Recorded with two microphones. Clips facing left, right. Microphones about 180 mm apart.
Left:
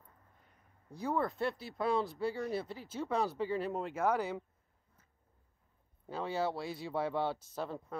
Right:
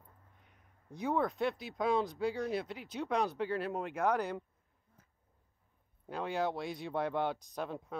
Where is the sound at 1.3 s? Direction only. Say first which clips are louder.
Right 1 dB; 15° right (ahead or behind).